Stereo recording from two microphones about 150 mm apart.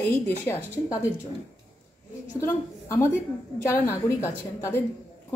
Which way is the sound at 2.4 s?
20° left (ahead or behind).